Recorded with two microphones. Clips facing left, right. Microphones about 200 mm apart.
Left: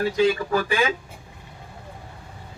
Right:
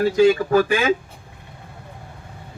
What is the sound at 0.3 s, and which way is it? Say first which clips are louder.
Speech: right 6 dB; 50° right (ahead or behind).